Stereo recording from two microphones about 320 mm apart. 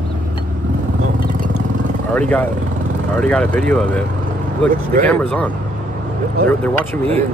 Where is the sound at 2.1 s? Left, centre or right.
Centre.